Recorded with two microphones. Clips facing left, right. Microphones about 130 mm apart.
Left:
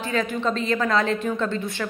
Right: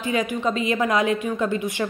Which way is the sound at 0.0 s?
15° right (ahead or behind).